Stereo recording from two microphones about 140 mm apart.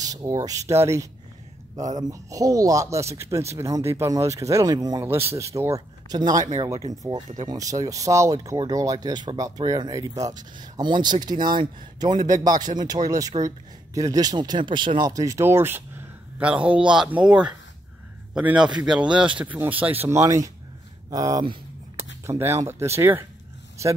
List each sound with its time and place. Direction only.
0.0 s a man's voice: 25° right (ahead or behind)